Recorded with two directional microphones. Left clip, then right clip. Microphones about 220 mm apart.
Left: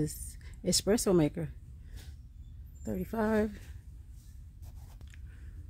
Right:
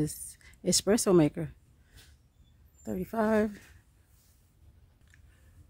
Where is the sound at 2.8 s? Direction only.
15° right (ahead or behind).